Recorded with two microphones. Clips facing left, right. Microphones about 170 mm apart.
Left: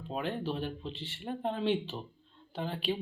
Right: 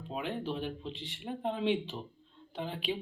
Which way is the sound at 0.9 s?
15° right (ahead or behind).